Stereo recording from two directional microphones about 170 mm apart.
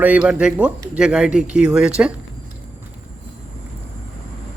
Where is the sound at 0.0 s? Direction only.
10° right (ahead or behind).